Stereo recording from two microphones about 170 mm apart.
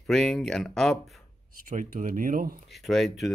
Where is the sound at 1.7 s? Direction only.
50° right (ahead or behind).